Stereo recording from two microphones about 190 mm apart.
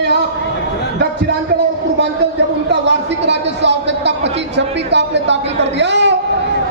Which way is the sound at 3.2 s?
65° right (ahead or behind).